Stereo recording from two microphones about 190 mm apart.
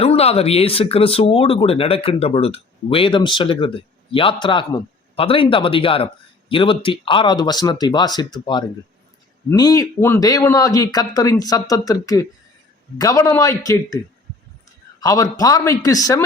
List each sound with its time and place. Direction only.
0.0 s a man's voice: 30° left (ahead or behind)
15.0 s speech: 20° left (ahead or behind)